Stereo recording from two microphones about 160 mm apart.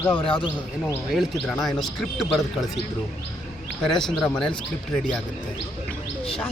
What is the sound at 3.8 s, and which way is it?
Speech, 5° left (ahead or behind).